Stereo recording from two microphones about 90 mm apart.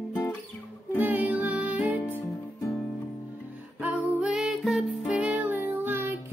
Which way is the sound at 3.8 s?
15° right (ahead or behind).